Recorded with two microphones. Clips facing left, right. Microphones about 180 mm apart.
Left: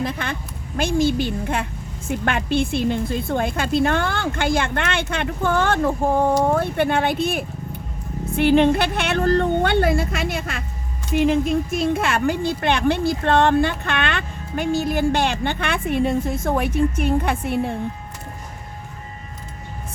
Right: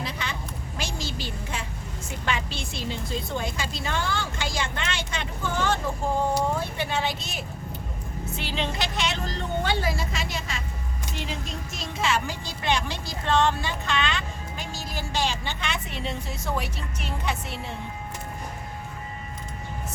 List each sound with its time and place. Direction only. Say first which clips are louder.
0.0 s a woman's voice: left 7 dB; 50° left (ahead or behind)